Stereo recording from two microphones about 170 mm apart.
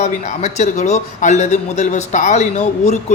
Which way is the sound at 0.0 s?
40° left (ahead or behind).